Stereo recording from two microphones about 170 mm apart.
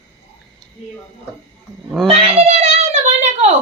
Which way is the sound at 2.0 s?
35° right (ahead or behind).